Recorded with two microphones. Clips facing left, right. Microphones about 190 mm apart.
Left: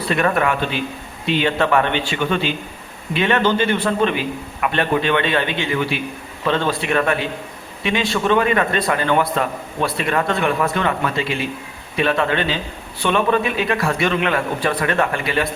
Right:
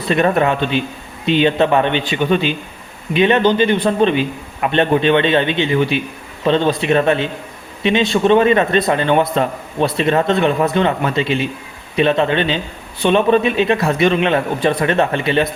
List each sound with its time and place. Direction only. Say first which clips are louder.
0.1 s a man's voice: right 4 dB; 25° right (ahead or behind)